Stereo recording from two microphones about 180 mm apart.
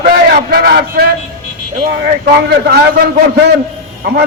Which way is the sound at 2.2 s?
60° right (ahead or behind).